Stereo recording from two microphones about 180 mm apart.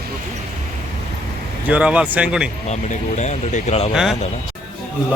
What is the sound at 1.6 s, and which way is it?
Speech, 5° right (ahead or behind).